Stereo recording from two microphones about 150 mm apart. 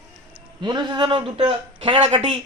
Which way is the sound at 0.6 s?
30° right (ahead or behind).